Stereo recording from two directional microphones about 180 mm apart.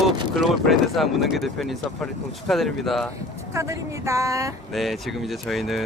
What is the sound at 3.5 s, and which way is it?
Speech, 15° right (ahead or behind).